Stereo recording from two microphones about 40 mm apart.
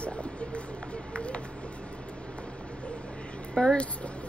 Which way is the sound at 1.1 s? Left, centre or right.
Left.